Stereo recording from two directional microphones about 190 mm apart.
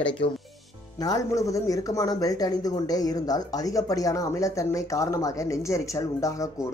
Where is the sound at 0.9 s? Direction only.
20° left (ahead or behind).